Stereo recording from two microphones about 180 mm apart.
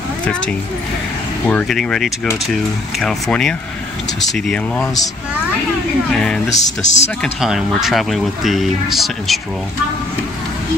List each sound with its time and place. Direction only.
0.2 s a woman's voice: 5° left (ahead or behind)
6.1 s speech: 5° left (ahead or behind)
6.5 s music: 40° left (ahead or behind)
7.2 s speech: centre (ahead or behind)